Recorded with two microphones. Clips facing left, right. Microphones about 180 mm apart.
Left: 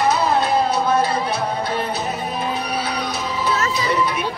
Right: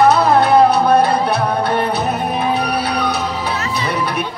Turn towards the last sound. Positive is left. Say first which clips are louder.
# even
turn(degrees=-65)  # may be behind; listen again after turning